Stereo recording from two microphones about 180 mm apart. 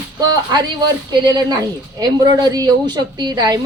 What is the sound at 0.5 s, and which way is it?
A woman's voice, 25° right (ahead or behind).